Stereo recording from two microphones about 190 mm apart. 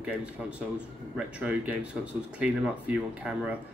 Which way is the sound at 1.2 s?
5° right (ahead or behind).